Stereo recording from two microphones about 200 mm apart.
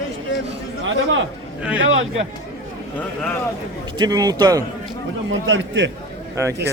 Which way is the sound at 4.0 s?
20° right (ahead or behind).